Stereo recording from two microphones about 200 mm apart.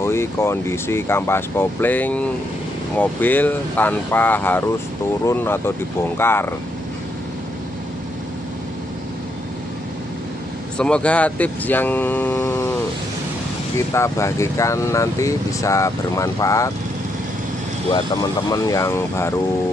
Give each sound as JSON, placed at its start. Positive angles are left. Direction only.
{"t": 0.0, "sound": "speech", "side_deg": 15}
{"t": 10.8, "sound": "speech", "side_deg": 5}
{"t": 13.7, "sound": "speech", "side_deg": 15}
{"t": 18.5, "sound": "speech", "side_deg": 15}